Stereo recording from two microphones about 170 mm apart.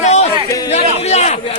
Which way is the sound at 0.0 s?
40° left (ahead or behind).